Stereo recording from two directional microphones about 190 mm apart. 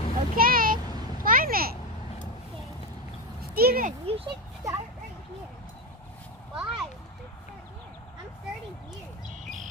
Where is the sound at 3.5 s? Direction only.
50° right (ahead or behind).